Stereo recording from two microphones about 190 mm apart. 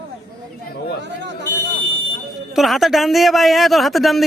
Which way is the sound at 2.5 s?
Centre (ahead or behind).